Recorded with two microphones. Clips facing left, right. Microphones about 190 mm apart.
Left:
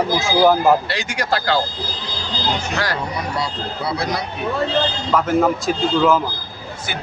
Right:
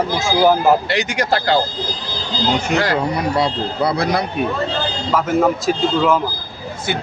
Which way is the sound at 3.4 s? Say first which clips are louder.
Right 7 dB; 55° right (ahead or behind).